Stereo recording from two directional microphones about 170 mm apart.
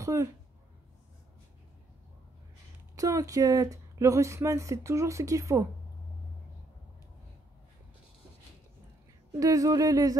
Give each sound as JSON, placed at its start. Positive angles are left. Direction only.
{"t": 0.0, "sound": "speech", "side_deg": -20}
{"t": 3.0, "sound": "speech", "side_deg": -20}
{"t": 9.4, "sound": "speech", "side_deg": -20}